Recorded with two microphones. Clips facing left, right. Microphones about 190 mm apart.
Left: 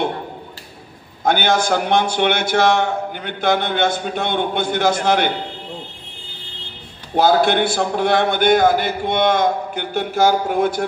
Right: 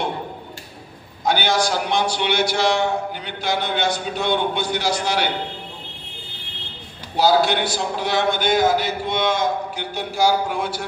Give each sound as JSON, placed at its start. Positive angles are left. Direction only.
{"t": 1.2, "sound": "a man's voice", "side_deg": 55}
{"t": 7.2, "sound": "a man's voice", "side_deg": 55}